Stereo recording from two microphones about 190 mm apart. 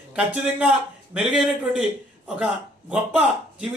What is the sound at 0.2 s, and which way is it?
A man's voice, 5° right (ahead or behind).